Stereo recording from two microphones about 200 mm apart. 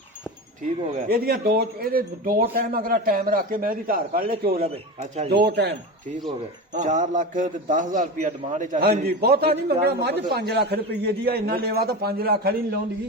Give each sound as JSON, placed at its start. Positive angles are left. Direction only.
{"t": 0.9, "sound": "speech", "side_deg": -50}
{"t": 4.6, "sound": "a man's voice", "side_deg": -30}
{"t": 5.3, "sound": "a man's voice", "side_deg": -55}
{"t": 6.7, "sound": "a man's voice", "side_deg": -40}